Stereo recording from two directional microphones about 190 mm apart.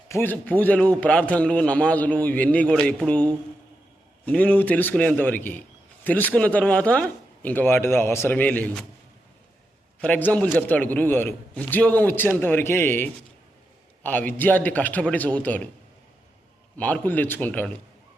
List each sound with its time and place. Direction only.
0.1 s a man's voice: 10° left (ahead or behind)
4.3 s a man's voice: 5° left (ahead or behind)
10.0 s a man's voice: 10° left (ahead or behind)
16.7 s a man's voice: 10° left (ahead or behind)